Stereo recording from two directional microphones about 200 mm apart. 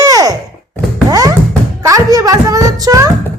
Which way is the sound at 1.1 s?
15° right (ahead or behind).